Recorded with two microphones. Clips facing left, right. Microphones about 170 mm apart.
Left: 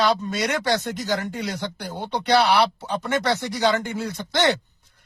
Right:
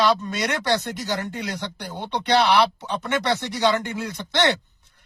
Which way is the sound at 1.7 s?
5° left (ahead or behind).